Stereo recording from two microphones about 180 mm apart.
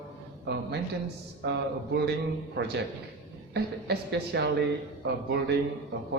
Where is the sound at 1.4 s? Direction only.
70° right (ahead or behind).